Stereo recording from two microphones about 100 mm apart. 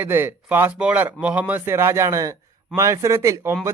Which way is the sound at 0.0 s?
20° right (ahead or behind).